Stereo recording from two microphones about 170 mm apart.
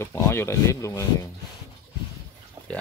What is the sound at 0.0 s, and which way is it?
Speech, 15° left (ahead or behind).